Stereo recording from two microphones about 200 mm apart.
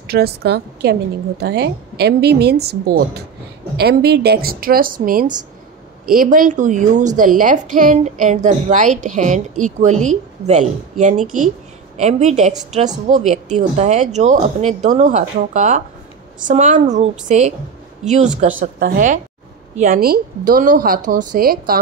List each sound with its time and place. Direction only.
0.0 s a woman's voice: 55° right (ahead or behind)
3.7 s a woman's voice: 55° right (ahead or behind); by 18.5 s 35° right (ahead or behind)
18.6 s a woman's voice: 45° right (ahead or behind)